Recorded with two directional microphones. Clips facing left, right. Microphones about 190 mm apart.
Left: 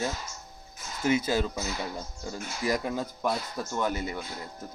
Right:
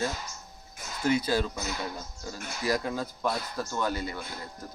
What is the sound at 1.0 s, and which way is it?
Speech, 20° left (ahead or behind).